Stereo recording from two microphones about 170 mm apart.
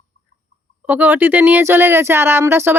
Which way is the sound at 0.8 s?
10° right (ahead or behind).